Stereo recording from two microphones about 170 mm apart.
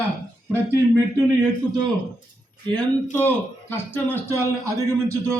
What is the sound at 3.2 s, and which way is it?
Speech, 10° left (ahead or behind).